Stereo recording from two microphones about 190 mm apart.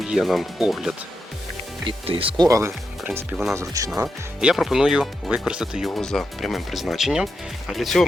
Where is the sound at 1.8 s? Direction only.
30° right (ahead or behind).